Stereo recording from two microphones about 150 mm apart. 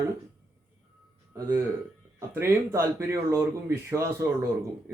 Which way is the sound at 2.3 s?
15° right (ahead or behind).